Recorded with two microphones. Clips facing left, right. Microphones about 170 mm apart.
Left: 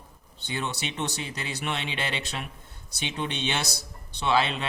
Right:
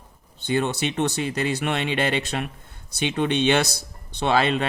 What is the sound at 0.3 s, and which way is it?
A man's voice, 55° right (ahead or behind).